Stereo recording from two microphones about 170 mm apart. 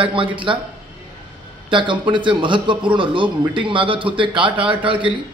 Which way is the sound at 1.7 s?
30° right (ahead or behind).